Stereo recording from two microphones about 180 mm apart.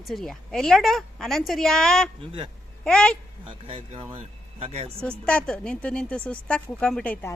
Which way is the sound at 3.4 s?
30° right (ahead or behind).